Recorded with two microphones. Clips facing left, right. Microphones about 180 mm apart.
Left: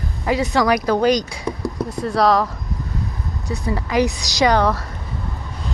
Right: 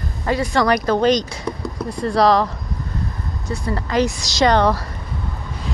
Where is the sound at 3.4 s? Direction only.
15° left (ahead or behind).